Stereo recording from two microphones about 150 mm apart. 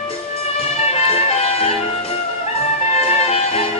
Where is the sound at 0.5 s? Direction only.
45° left (ahead or behind).